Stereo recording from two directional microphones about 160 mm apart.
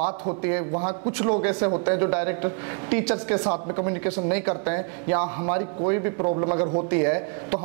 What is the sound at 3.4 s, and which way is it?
A woman's voice, 25° right (ahead or behind).